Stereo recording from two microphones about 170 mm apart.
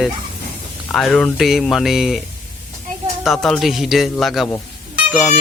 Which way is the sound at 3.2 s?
Centre (ahead or behind).